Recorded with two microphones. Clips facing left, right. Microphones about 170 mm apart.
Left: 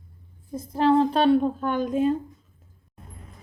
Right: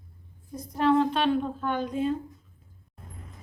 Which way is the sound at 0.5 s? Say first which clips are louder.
Left 3 dB; 25° left (ahead or behind).